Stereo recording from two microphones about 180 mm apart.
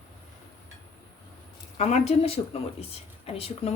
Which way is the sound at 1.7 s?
35° left (ahead or behind).